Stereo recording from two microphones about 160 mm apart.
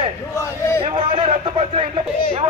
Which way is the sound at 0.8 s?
35° right (ahead or behind).